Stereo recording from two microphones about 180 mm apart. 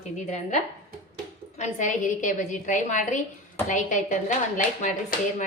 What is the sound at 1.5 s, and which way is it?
A woman's voice, 40° left (ahead or behind).